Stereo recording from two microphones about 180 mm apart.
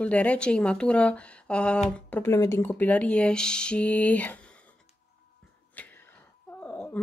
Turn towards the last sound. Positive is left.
turn(degrees=10)  # may be behind; listen again after turning